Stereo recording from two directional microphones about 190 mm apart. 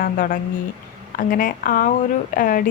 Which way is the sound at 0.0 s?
45° left (ahead or behind).